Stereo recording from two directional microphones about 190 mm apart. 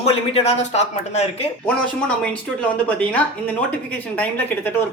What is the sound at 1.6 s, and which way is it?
Speech, 5° left (ahead or behind).